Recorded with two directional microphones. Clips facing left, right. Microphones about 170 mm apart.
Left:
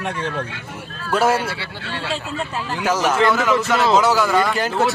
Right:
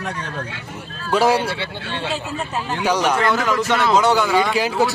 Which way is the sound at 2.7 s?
Centre (ahead or behind).